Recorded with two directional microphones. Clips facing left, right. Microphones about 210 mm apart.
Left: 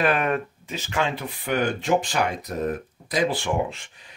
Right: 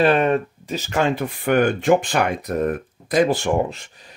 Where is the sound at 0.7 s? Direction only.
40° right (ahead or behind).